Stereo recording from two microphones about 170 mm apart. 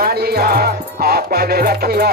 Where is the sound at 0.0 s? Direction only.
65° right (ahead or behind).